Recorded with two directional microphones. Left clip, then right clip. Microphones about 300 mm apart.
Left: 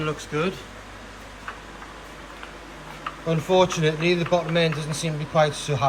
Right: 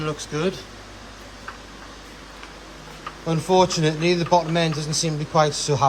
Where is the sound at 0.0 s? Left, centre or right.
Centre.